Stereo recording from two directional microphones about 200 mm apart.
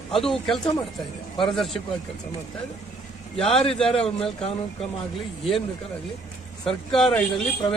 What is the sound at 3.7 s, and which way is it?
Speech, 5° left (ahead or behind).